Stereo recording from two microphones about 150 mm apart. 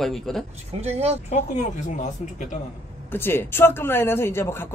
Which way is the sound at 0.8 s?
45° right (ahead or behind).